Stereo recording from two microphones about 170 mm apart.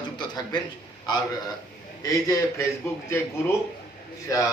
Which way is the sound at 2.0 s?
20° left (ahead or behind).